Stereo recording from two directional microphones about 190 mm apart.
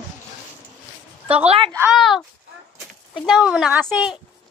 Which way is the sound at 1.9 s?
Centre (ahead or behind).